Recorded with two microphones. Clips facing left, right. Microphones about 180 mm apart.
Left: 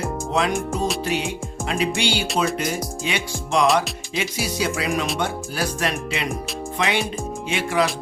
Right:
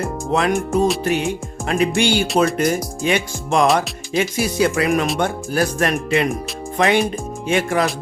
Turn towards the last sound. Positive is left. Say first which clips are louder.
# right 3 dB
turn(degrees=-50)  # may be behind; listen again after turning